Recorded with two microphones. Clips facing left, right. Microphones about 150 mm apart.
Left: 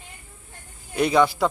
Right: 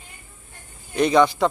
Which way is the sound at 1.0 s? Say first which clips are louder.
Right 2 dB; 5° left (ahead or behind).